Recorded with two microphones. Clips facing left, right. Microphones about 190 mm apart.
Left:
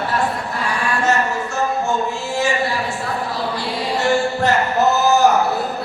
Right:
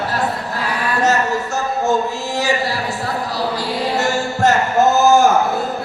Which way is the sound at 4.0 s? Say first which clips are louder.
Left 2 dB; 45° right (ahead or behind).